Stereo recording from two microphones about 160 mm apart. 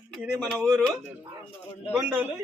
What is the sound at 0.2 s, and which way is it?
Speech, 5° right (ahead or behind).